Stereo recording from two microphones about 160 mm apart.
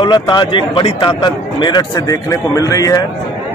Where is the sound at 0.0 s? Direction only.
30° left (ahead or behind).